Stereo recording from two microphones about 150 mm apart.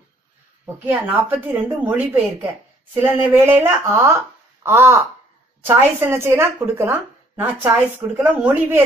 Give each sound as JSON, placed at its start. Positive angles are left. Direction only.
{"t": 0.8, "sound": "speech", "side_deg": -10}